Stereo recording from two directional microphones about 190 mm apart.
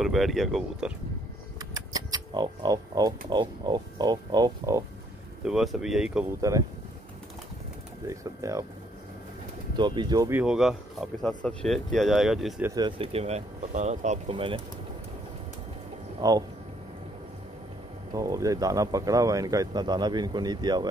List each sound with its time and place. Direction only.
0.0 s speech: centre (ahead or behind)
1.6 s speech: 20° right (ahead or behind)
5.4 s speech: centre (ahead or behind)
6.5 s speech: 15° right (ahead or behind)
8.1 s speech: 15° right (ahead or behind)
9.8 s speech: 25° right (ahead or behind)
10.4 s speech: 5° right (ahead or behind)
12.6 s speech: 20° right (ahead or behind)
16.2 s speech: 20° right (ahead or behind)
18.1 s speech: 15° right (ahead or behind)